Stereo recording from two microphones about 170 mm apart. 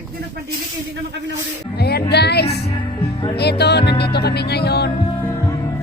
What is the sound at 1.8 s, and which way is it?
Speech, 70° left (ahead or behind).